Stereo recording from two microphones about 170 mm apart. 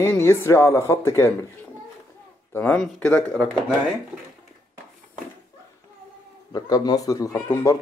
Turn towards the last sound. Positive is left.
turn(degrees=20)  # may be behind; listen again after turning